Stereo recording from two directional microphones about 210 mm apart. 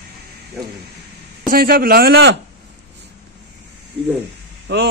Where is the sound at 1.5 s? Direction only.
45° right (ahead or behind).